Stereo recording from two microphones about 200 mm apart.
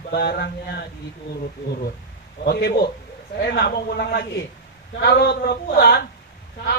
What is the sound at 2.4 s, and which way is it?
A man's voice, 55° left (ahead or behind).